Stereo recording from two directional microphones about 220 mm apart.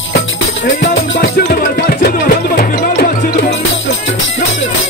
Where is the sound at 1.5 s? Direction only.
40° left (ahead or behind).